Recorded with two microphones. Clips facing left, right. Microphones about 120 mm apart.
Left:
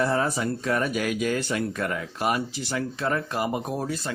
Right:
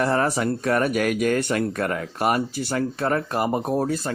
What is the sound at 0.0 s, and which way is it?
Speech, 60° right (ahead or behind).